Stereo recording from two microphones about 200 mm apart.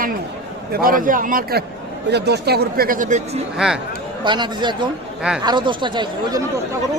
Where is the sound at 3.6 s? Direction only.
5° right (ahead or behind).